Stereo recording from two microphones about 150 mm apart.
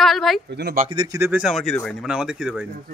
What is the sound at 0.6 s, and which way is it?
Speech, 90° right.